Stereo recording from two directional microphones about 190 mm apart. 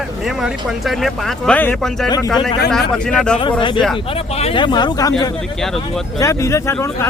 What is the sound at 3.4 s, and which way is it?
Speech, 25° left (ahead or behind).